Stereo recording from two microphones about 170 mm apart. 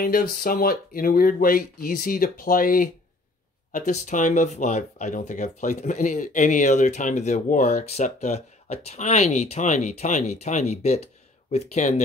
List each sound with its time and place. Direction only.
0.0 s speech: 60° left (ahead or behind); by 12.0 s 40° left (ahead or behind)